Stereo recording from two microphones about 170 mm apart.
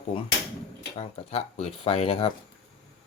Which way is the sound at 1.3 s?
35° left (ahead or behind).